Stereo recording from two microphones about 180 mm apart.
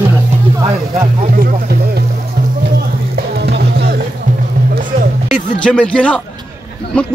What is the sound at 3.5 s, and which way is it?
Music, 70° right (ahead or behind).